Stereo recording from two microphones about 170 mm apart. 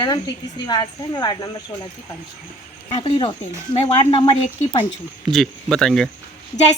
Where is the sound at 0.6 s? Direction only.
25° left (ahead or behind).